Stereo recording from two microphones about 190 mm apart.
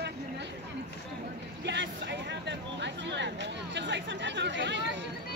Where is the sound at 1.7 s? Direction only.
65° right (ahead or behind).